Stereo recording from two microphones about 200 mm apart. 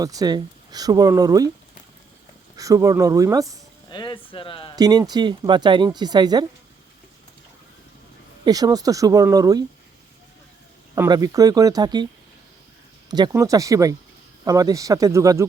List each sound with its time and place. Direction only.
0.0 s speech: 20° right (ahead or behind)
2.6 s speech: 15° right (ahead or behind)
3.8 s speech: 25° left (ahead or behind)
4.8 s speech: 20° right (ahead or behind)
8.4 s speech: 20° right (ahead or behind)
10.9 s speech: 15° right (ahead or behind)
13.1 s speech: 20° right (ahead or behind)